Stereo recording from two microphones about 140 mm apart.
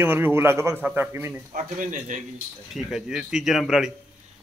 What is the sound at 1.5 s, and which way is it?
Speech, 65° right (ahead or behind).